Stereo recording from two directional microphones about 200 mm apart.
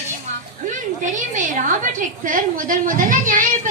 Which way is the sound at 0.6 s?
40° right (ahead or behind).